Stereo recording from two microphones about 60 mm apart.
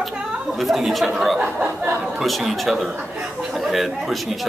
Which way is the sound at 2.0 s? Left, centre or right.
Centre.